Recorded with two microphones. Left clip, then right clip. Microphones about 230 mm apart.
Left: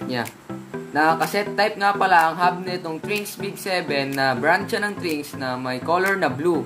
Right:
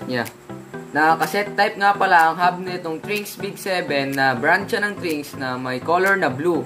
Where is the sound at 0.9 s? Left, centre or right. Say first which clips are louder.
Right 2 dB; centre.